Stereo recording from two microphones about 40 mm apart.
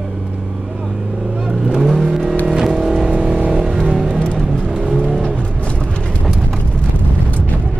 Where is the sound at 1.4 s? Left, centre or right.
Centre.